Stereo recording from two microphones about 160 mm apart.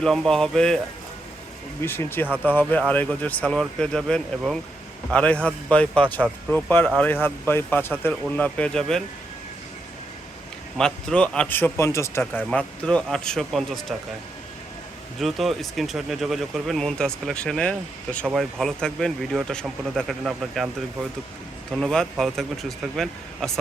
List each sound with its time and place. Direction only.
0.0 s speech: centre (ahead or behind)
1.8 s a man's voice: 15° left (ahead or behind)
10.8 s a man's voice: 5° left (ahead or behind)
15.2 s speech: centre (ahead or behind)
21.7 s speech: centre (ahead or behind)